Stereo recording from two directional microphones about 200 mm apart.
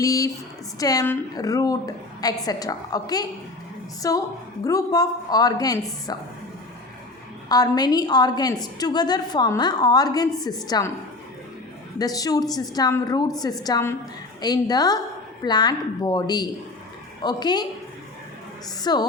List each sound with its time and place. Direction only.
0.0 s a woman's voice: 15° left (ahead or behind)
7.4 s a woman's voice: 20° left (ahead or behind)
11.9 s a woman's voice: 20° left (ahead or behind)
18.8 s a woman's voice: 20° left (ahead or behind)